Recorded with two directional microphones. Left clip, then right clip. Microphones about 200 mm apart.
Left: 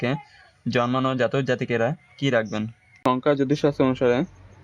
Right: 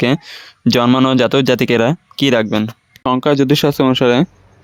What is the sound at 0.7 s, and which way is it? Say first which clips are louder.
Speech: right 10 dB; 50° right (ahead or behind).